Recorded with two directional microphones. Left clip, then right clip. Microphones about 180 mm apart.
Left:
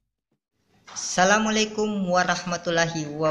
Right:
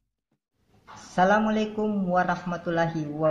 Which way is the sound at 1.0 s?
15° left (ahead or behind).